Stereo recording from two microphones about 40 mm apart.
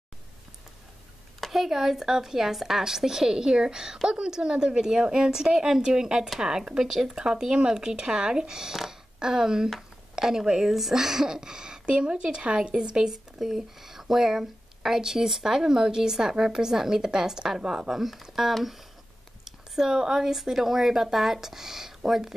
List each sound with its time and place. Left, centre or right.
1.5 s speech: centre